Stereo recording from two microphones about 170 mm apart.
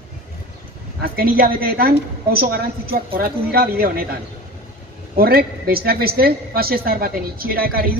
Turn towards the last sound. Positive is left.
turn(degrees=-60)  # may be behind; listen again after turning